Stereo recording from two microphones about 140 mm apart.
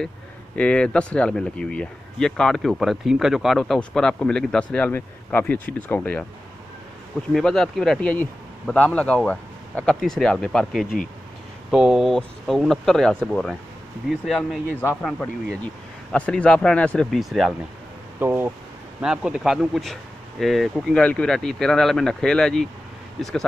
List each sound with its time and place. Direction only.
0.6 s speech: 10° left (ahead or behind)
7.3 s speech: 5° left (ahead or behind)
14.8 s speech: 15° left (ahead or behind); by 17.6 s centre (ahead or behind)
18.2 s speech: 15° right (ahead or behind); by 23.3 s centre (ahead or behind)